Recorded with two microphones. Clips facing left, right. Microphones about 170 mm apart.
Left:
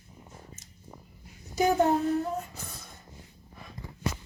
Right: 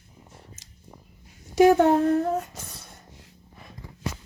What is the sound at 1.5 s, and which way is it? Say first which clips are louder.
Child singing: right 7 dB; 90° right.